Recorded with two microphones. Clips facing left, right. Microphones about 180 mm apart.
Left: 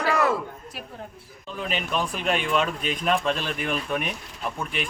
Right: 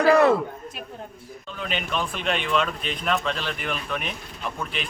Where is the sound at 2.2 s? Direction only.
5° left (ahead or behind).